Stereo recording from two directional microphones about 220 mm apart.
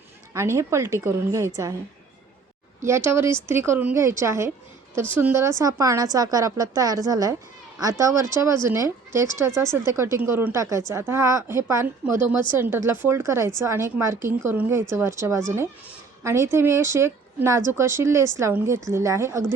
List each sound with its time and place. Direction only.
0.3 s a woman's voice: 10° right (ahead or behind)
2.8 s a woman's voice: 10° right (ahead or behind)